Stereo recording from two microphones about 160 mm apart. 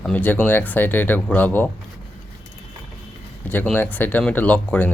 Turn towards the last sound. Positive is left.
turn(degrees=10)  # may be behind; listen again after turning